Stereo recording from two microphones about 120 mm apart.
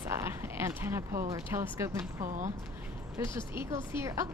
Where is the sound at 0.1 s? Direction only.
20° right (ahead or behind).